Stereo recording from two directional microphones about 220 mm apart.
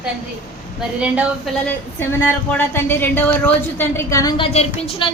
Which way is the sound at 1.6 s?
5° left (ahead or behind).